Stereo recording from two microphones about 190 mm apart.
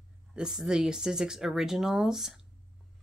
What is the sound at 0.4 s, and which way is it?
Speech, 5° right (ahead or behind).